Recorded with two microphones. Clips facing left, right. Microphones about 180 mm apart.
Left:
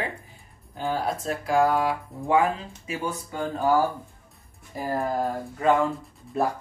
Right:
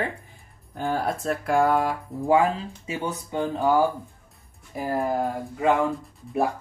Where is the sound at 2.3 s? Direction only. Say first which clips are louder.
Right 2 dB; 20° right (ahead or behind).